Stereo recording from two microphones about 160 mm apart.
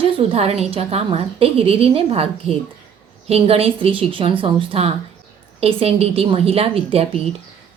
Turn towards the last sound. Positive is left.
turn(degrees=-40)  # may be behind; listen again after turning